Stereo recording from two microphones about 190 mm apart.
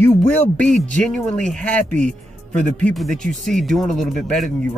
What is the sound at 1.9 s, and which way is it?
Speech, 40° right (ahead or behind).